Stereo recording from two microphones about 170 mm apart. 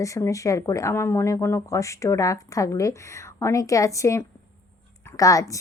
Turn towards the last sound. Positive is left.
turn(degrees=20)  # may be behind; listen again after turning